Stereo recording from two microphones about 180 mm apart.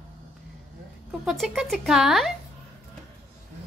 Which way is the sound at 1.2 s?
Centre (ahead or behind).